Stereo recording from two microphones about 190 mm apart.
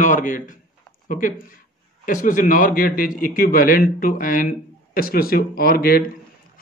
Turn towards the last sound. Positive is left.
turn(degrees=50)  # may be behind; listen again after turning